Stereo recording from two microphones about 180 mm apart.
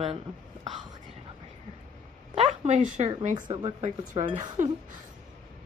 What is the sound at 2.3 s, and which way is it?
A woman's voice, 40° right (ahead or behind).